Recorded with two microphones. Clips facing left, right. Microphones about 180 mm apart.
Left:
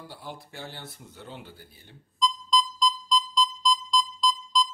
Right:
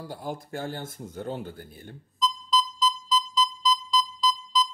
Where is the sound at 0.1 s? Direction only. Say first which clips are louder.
Right 7 dB; 45° right (ahead or behind).